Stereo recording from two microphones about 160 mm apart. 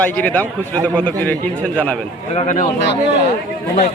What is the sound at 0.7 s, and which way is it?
Speech, 20° right (ahead or behind).